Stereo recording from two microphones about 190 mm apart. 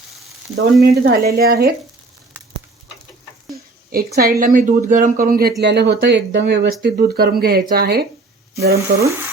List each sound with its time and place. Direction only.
0.5 s speech: 60° right (ahead or behind)
3.9 s speech: 50° right (ahead or behind)